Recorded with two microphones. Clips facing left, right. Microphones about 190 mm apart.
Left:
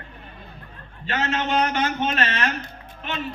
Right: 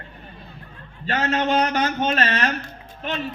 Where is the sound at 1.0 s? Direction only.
40° right (ahead or behind).